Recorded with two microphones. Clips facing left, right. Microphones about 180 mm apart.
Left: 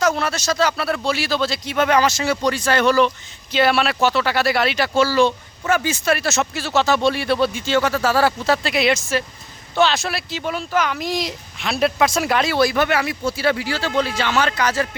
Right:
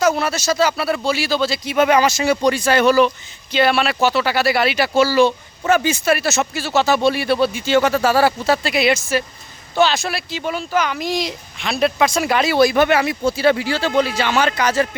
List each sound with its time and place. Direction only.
0.0 s speech: 5° right (ahead or behind)
3.5 s speech: centre (ahead or behind)
5.6 s speech: 20° right (ahead or behind)
6.1 s speech: 5° right (ahead or behind)
7.7 s speech: 20° right (ahead or behind); by 12.5 s centre (ahead or behind)
12.5 s speech: 15° right (ahead or behind)